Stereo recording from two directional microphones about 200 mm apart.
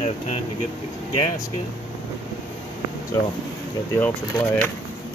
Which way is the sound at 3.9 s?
5° left (ahead or behind).